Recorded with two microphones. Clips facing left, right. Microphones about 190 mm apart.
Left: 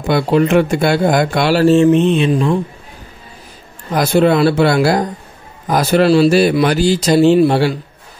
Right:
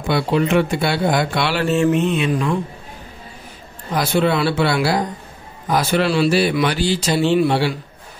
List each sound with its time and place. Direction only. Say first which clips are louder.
0.0 s speech: left 5 dB; 45° left (ahead or behind); by 2.0 s 30° left (ahead or behind)
2.0 s mantra: left 5 dB; 30° left (ahead or behind)
3.9 s a man's voice: left 6 dB; 45° left (ahead or behind)